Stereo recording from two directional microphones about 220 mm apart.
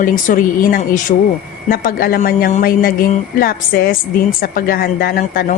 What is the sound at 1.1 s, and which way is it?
Speech, 25° left (ahead or behind).